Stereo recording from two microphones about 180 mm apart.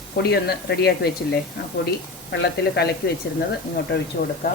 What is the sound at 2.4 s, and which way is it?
Speech, 65° left (ahead or behind).